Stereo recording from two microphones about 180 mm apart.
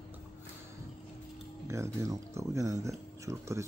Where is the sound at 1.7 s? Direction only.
15° right (ahead or behind).